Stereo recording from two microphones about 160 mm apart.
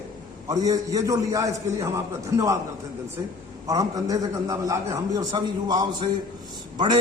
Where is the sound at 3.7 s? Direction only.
20° right (ahead or behind).